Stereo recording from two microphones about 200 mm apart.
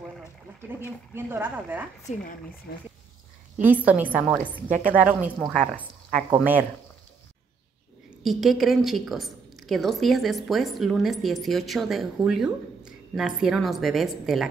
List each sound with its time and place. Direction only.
0.6 s speech: 10° right (ahead or behind)
2.1 s speech: 35° left (ahead or behind)
3.8 s a woman's voice: 5° right (ahead or behind)
6.3 s speech: 10° right (ahead or behind)
8.2 s a woman's voice: centre (ahead or behind)